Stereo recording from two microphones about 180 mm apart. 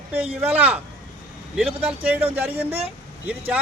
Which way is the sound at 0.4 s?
10° right (ahead or behind).